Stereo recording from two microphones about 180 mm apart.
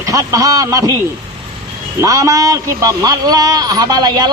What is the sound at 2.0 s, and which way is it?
A man's voice, 20° right (ahead or behind).